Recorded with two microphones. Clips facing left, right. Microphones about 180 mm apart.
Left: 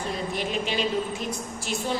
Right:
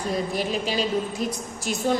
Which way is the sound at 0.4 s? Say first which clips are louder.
Right 2 dB; 40° right (ahead or behind).